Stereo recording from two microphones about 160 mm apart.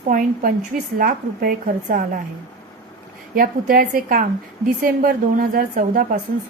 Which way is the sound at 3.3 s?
65° right (ahead or behind).